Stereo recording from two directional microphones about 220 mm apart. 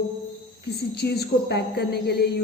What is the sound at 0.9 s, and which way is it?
A woman's voice, 45° left (ahead or behind).